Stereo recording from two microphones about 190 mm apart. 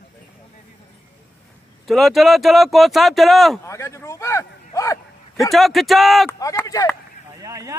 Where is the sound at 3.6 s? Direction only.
15° left (ahead or behind).